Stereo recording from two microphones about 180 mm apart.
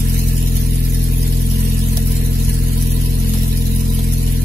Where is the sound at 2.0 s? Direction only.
60° right (ahead or behind).